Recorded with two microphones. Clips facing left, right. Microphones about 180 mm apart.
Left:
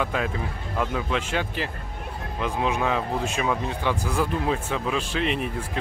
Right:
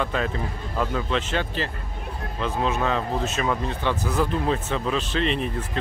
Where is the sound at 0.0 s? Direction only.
10° left (ahead or behind).